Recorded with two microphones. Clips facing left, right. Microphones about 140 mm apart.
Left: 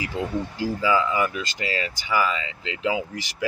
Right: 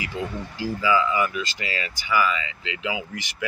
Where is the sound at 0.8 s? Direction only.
35° left (ahead or behind).